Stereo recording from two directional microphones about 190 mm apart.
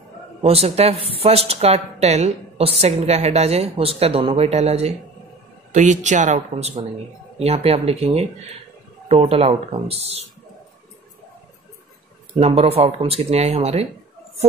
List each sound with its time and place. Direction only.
0.4 s speech: 30° right (ahead or behind)
12.4 s speech: 35° right (ahead or behind)